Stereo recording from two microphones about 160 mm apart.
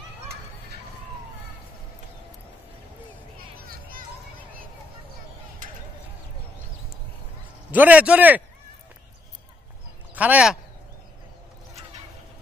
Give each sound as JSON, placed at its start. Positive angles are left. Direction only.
{"t": 3.5, "sound": "children playing", "side_deg": -65}
{"t": 5.6, "sound": "a sound", "side_deg": -55}
{"t": 7.7, "sound": "a man's voice", "side_deg": -10}
{"t": 10.1, "sound": "speech", "side_deg": -10}